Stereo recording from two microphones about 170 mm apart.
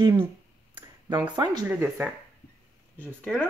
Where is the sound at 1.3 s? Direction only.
25° right (ahead or behind).